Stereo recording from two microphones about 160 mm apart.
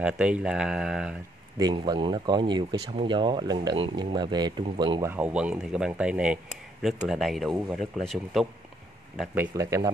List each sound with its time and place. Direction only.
0.0 s speech: 5° right (ahead or behind)
1.6 s speech: 30° right (ahead or behind)
5.0 s speech: 10° right (ahead or behind)
9.3 s speech: 15° right (ahead or behind)